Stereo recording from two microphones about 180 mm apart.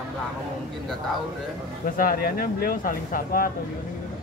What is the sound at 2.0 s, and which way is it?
Speech, 55° left (ahead or behind).